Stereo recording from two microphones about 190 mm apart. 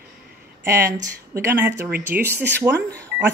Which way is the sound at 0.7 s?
15° right (ahead or behind).